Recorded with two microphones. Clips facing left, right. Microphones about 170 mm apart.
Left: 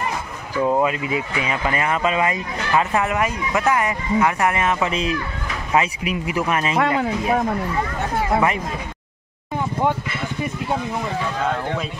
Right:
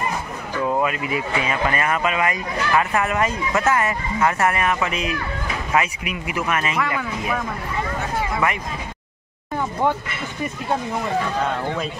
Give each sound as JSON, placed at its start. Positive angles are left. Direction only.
{"t": 0.7, "sound": "speech", "side_deg": 20}